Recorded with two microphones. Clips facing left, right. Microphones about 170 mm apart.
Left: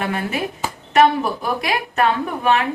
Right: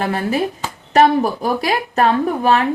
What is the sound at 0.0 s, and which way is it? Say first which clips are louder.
A man's voice: right 4 dB; 35° right (ahead or behind).